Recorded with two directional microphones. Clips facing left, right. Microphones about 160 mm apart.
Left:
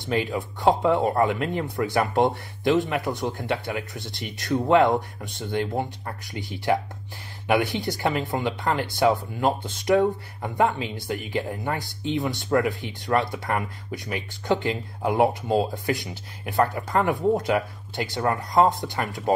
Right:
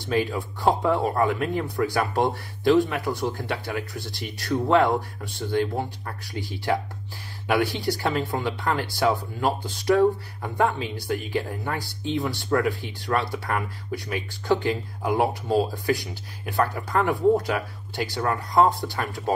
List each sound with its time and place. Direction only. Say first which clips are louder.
0.0 s speech: right 1 dB; 20° left (ahead or behind)